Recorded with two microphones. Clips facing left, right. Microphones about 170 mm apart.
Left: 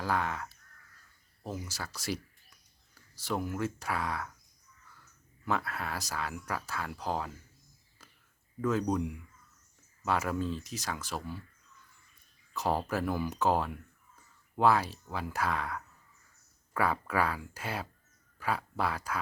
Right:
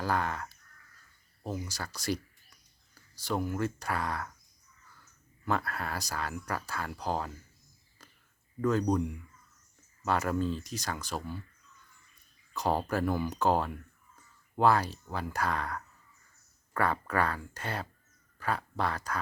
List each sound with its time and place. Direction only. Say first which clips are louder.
0.0 s speech: right 1 dB; centre (ahead or behind)
5.5 s speech: right 1 dB; centre (ahead or behind)
8.6 s speech: right 2 dB; 5° left (ahead or behind)
12.5 s speech: right 1 dB; centre (ahead or behind)